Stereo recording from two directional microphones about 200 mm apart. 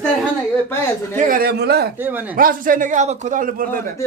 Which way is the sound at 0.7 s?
10° left (ahead or behind).